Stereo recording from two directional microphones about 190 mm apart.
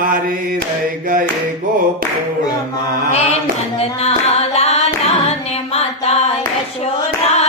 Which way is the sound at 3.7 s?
35° left (ahead or behind).